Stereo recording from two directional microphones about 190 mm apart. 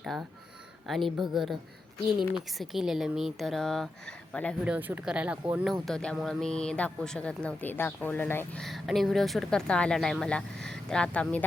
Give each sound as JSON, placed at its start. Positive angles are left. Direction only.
{"t": 0.0, "sound": "a woman's voice", "side_deg": 0}
{"t": 4.6, "sound": "a woman's voice", "side_deg": -10}
{"t": 8.6, "sound": "a woman's voice", "side_deg": 0}